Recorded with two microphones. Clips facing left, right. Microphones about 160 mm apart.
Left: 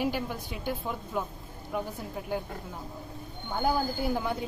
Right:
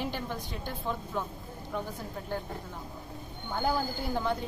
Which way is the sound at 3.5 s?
5° left (ahead or behind).